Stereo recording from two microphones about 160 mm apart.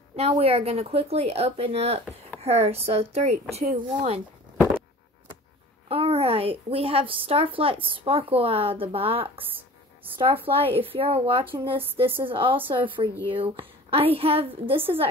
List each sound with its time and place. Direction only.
0.1 s a woman's voice: 40° right (ahead or behind)
5.9 s a woman's voice: 35° right (ahead or behind)
9.4 s speech: 10° right (ahead or behind)
10.1 s a woman's voice: 35° right (ahead or behind)